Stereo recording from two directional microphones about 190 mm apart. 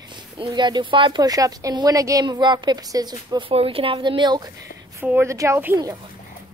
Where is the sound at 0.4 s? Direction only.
25° right (ahead or behind).